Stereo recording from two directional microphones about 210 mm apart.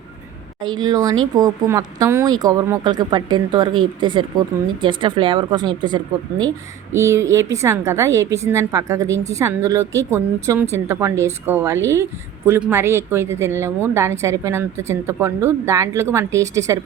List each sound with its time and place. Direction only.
0.8 s a woman's voice: 20° right (ahead or behind)